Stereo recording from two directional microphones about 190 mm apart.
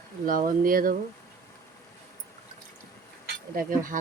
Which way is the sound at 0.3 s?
45° right (ahead or behind).